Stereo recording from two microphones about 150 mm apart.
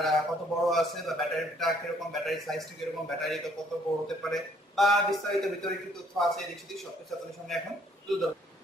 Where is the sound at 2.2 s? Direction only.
Centre (ahead or behind).